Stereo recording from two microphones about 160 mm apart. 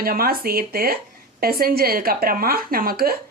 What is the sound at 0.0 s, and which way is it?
Speech, 70° right (ahead or behind).